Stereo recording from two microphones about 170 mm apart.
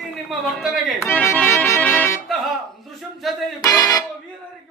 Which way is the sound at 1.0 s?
15° left (ahead or behind).